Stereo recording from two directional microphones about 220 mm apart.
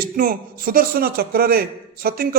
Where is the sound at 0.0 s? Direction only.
40° right (ahead or behind).